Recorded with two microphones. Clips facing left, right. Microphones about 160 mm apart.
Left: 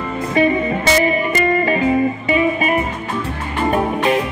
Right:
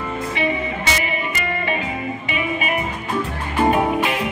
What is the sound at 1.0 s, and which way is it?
Music, 40° left (ahead or behind).